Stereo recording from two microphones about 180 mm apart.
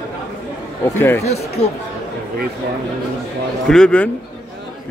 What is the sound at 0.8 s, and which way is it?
Speech, 10° left (ahead or behind).